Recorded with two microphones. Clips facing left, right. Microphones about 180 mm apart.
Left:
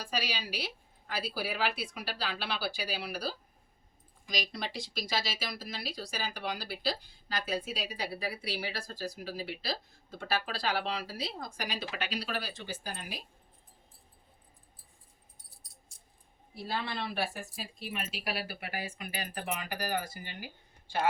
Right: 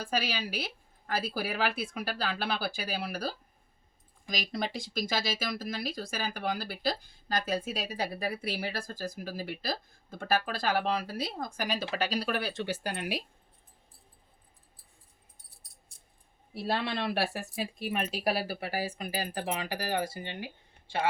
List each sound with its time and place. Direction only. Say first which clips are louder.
0.0 s speech: right 4 dB; 50° right (ahead or behind)
4.5 s speech: right 5 dB; 50° right (ahead or behind)
12.4 s speech: right 7 dB; 70° right (ahead or behind)
16.6 s speech: right 5 dB; 70° right (ahead or behind); by 20.3 s 25° right (ahead or behind)
20.4 s a sound: right 5 dB; 25° right (ahead or behind)